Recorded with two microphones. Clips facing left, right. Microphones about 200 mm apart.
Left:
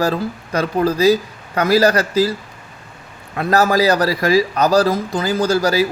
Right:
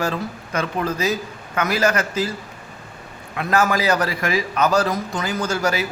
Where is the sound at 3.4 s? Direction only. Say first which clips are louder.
Left 5 dB; 35° left (ahead or behind).